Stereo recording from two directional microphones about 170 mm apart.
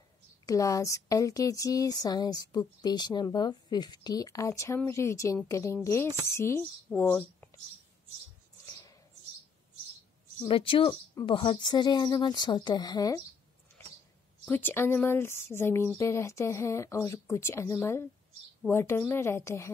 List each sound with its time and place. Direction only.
0.5 s speech: 20° left (ahead or behind)
10.5 s speech: 30° left (ahead or behind)
14.4 s speech: 10° left (ahead or behind)